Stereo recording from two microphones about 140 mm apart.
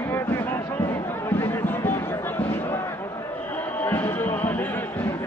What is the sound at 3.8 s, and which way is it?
Basketball bounce, 15° left (ahead or behind).